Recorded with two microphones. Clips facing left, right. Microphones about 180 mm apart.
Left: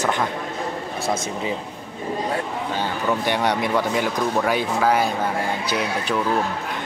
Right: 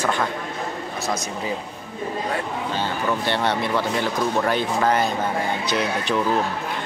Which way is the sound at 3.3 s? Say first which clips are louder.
Left 1 dB; 15° left (ahead or behind).